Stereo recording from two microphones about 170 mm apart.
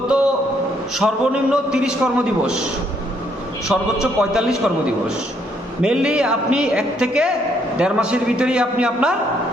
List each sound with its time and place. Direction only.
0.9 s a man's voice: 5° right (ahead or behind)
3.7 s a man's voice: centre (ahead or behind)